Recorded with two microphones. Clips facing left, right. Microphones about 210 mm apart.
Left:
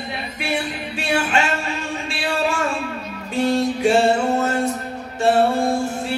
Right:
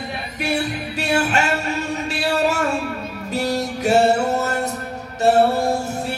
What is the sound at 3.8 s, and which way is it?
Music, 40° right (ahead or behind).